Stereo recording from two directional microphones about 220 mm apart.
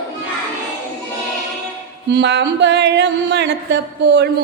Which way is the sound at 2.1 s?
50° right (ahead or behind).